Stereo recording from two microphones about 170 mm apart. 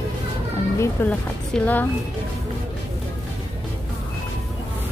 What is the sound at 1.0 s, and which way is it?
Speech, 10° left (ahead or behind).